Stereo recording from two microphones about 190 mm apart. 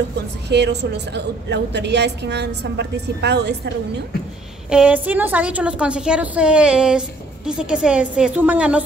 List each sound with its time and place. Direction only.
0.5 s a woman's voice: 60° right (ahead or behind)
4.6 s a woman's voice: 5° right (ahead or behind)